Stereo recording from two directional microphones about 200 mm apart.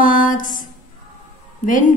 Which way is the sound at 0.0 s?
40° left (ahead or behind).